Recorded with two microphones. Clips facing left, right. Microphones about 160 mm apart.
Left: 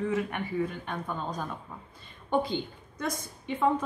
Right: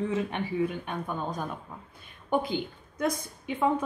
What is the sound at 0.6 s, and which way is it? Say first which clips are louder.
Speech: right 2 dB; 15° right (ahead or behind).